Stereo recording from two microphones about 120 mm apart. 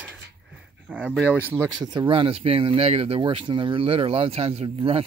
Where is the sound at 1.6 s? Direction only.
35° right (ahead or behind).